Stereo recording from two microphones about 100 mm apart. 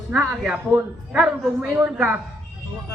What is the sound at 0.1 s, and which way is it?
Speech, 10° right (ahead or behind).